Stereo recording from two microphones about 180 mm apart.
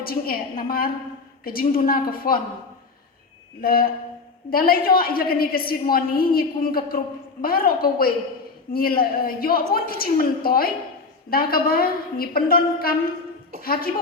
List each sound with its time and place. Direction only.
0.0 s a woman's voice: 55° left (ahead or behind)
1.5 s a woman's voice: 55° left (ahead or behind)
3.6 s a woman's voice: 55° left (ahead or behind)